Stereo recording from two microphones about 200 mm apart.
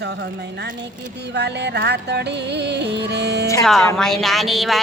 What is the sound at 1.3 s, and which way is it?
Music, 60° right (ahead or behind).